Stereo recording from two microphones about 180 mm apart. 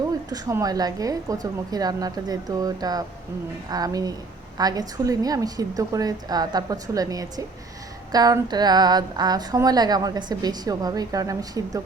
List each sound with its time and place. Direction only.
0.3 s speech: 20° right (ahead or behind)